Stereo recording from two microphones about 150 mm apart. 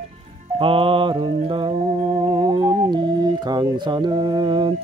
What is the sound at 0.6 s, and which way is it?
Mantra, 35° right (ahead or behind).